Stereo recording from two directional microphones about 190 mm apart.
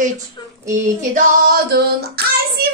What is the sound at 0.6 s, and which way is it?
Child singing, 45° right (ahead or behind).